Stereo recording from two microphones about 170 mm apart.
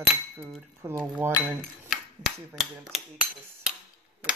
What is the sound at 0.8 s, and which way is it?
Cutlery, 15° right (ahead or behind).